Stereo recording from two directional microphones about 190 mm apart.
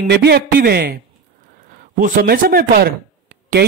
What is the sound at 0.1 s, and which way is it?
Speech, 60° right (ahead or behind).